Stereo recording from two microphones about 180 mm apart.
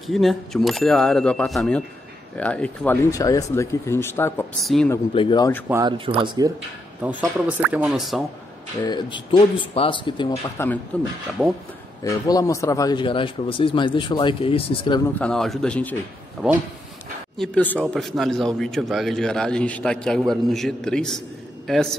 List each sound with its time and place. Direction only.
0.0 s a man's voice: centre (ahead or behind)
4.6 s a man's voice: centre (ahead or behind)
5.1 s a man's voice: 25° left (ahead or behind)
5.7 s speech: 20° right (ahead or behind)
5.9 s speech: 30° right (ahead or behind)
7.0 s speech: 10° right (ahead or behind)
8.8 s a man's voice: 25° left (ahead or behind)
10.9 s a man's voice: 5° left (ahead or behind)
12.0 s a man's voice: 20° left (ahead or behind)
15.1 s a man's voice: 5° left (ahead or behind)
17.4 s a man's voice: 5° left (ahead or behind)